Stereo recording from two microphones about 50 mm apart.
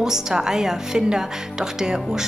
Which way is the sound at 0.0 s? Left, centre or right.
Centre.